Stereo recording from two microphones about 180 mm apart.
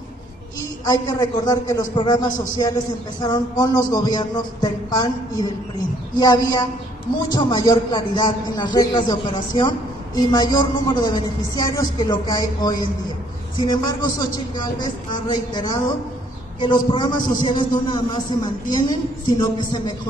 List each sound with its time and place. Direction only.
0.6 s a man's voice: 20° left (ahead or behind)